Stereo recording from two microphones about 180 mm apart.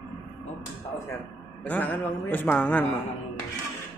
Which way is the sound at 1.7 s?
10° left (ahead or behind).